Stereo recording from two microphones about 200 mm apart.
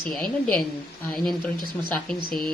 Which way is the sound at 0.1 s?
Centre (ahead or behind).